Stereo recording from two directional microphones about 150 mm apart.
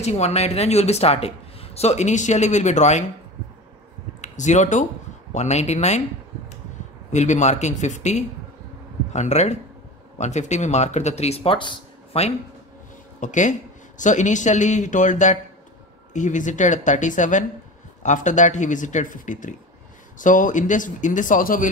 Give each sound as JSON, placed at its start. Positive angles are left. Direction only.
{"t": 0.0, "sound": "speech", "side_deg": 45}
{"t": 4.2, "sound": "speech", "side_deg": 55}
{"t": 7.1, "sound": "speech", "side_deg": 50}
{"t": 13.2, "sound": "speech", "side_deg": 55}